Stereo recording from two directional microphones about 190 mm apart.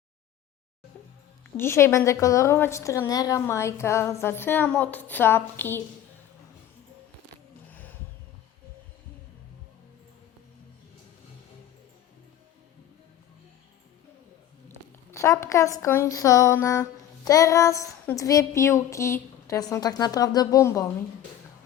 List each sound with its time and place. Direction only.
1.5 s a woman's voice: 15° left (ahead or behind)
7.7 s a sound: 10° left (ahead or behind)
15.1 s a woman's voice: 15° left (ahead or behind)